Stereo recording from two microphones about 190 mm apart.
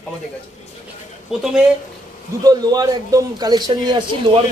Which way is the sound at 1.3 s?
Centre (ahead or behind).